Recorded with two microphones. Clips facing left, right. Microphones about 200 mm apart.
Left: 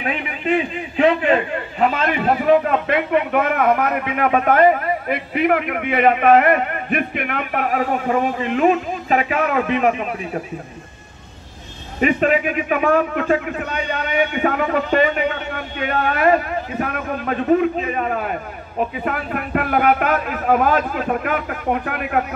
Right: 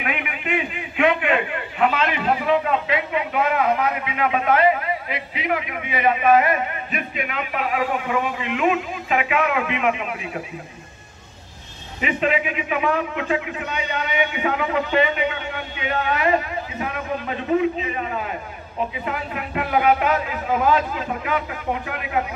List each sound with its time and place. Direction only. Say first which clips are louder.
0.0 s a man's voice: left 4 dB; 35° left (ahead or behind)
12.0 s a man's voice: left 5 dB; 45° left (ahead or behind)